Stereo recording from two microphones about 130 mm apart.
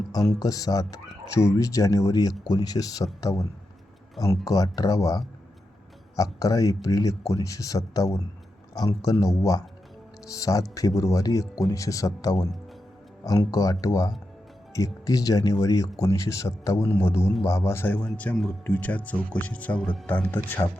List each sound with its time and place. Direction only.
0.3 s speech: 30° left (ahead or behind)